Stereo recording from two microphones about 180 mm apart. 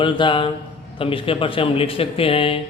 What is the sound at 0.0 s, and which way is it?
Speech, 25° left (ahead or behind).